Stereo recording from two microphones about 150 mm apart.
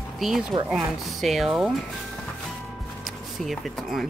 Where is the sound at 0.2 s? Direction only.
Centre (ahead or behind).